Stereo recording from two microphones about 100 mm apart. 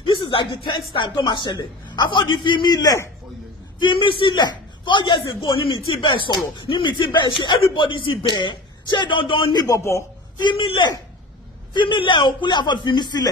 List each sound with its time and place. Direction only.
0.2 s music: 60° left (ahead or behind)
0.9 s speech: 50° left (ahead or behind)
3.8 s speech: 60° left (ahead or behind)
9.8 s a man's voice: 30° left (ahead or behind)
10.4 s speech: 50° left (ahead or behind)